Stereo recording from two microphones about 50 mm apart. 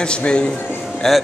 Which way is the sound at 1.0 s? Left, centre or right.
Centre.